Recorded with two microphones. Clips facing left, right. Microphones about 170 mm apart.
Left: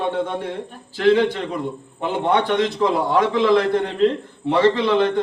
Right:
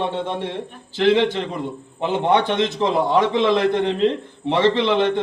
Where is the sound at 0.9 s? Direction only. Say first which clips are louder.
Left 1 dB; 20° right (ahead or behind).